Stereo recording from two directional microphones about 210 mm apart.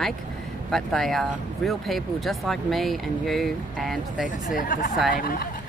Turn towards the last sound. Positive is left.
turn(degrees=40)  # may be behind; listen again after turning